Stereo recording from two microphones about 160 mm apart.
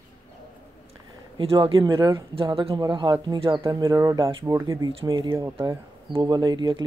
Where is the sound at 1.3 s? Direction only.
35° right (ahead or behind).